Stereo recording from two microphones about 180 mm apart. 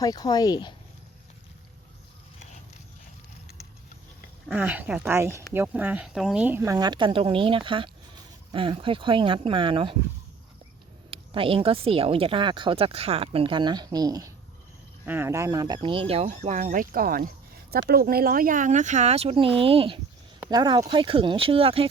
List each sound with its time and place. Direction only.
0.0 s speech: 20° left (ahead or behind)
4.5 s speech: 10° right (ahead or behind); by 9.9 s 30° right (ahead or behind)
11.1 s speech: 30° right (ahead or behind)